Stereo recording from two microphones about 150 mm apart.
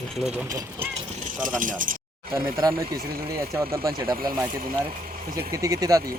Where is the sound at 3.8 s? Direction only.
25° right (ahead or behind).